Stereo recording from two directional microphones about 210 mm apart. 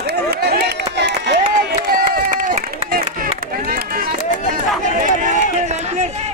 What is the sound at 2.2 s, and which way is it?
Run, 40° right (ahead or behind).